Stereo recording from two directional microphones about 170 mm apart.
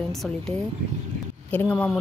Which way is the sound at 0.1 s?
Centre (ahead or behind).